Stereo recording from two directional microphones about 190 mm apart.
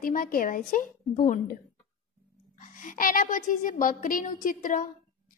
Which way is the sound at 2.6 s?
45° left (ahead or behind).